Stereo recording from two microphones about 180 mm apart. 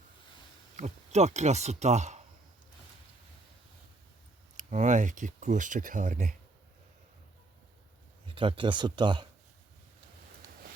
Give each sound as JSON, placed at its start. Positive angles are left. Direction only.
{"t": 0.8, "sound": "speech", "side_deg": -40}
{"t": 4.5, "sound": "speech", "side_deg": -45}
{"t": 8.4, "sound": "speech", "side_deg": -30}